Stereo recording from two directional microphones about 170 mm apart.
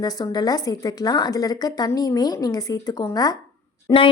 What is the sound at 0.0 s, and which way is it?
Speech, 20° left (ahead or behind).